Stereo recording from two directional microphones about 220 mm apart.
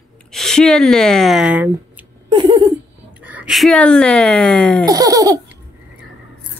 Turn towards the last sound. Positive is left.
turn(degrees=-15)  # may be behind; listen again after turning